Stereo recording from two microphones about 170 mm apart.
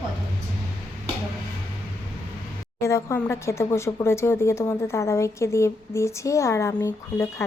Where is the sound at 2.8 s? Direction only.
15° left (ahead or behind).